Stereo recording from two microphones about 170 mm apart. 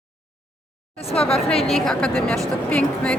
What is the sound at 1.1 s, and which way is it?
Speech, 35° left (ahead or behind).